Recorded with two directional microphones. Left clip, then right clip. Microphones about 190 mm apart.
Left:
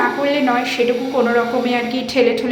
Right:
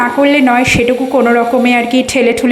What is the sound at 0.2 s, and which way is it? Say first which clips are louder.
A woman's voice: right 8 dB; 40° right (ahead or behind).